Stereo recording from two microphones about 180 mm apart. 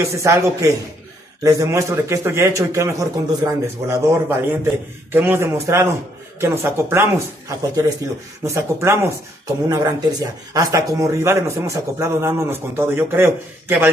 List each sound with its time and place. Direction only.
0.0 s speech: 15° right (ahead or behind)